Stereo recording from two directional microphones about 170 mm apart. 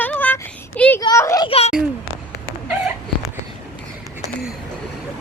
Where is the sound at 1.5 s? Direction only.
35° left (ahead or behind).